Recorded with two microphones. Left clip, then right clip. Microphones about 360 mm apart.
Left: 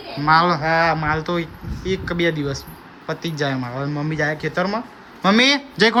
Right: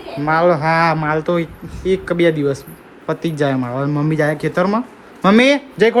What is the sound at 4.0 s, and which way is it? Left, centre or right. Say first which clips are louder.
Speech: right 4 dB; centre.